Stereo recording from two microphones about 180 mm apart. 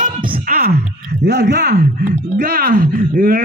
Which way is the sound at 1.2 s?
75° right (ahead or behind).